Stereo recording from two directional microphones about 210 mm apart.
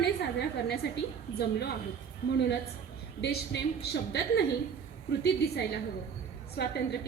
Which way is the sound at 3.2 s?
50° left (ahead or behind).